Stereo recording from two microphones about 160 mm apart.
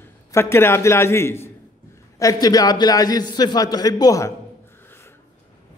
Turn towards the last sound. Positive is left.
turn(degrees=20)  # may be behind; listen again after turning